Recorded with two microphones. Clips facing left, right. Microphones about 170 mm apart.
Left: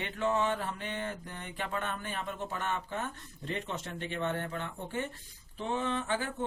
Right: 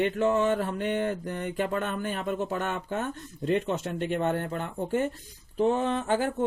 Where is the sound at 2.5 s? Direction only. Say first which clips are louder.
Right 5 dB; 60° right (ahead or behind).